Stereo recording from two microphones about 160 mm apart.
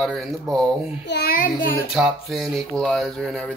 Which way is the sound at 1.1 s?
75° left (ahead or behind).